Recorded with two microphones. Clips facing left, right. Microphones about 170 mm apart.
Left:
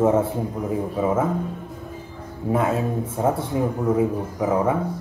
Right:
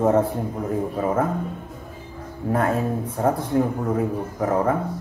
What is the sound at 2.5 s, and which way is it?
Speech, 5° left (ahead or behind).